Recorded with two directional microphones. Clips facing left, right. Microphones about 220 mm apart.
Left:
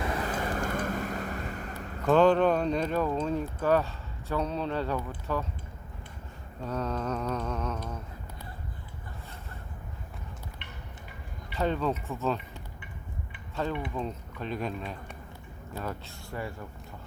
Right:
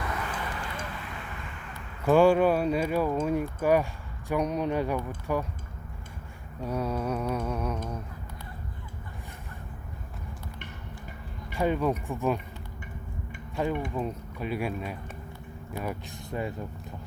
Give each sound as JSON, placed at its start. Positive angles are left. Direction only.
{"t": 0.0, "sound": "vehicle", "side_deg": 30}
{"t": 2.0, "sound": "speech", "side_deg": -10}
{"t": 6.7, "sound": "speech", "side_deg": -10}
{"t": 11.5, "sound": "speech", "side_deg": -10}
{"t": 13.6, "sound": "speech", "side_deg": -15}